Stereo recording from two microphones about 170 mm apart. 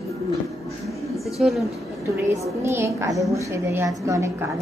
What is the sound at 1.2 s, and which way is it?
Speech, centre (ahead or behind).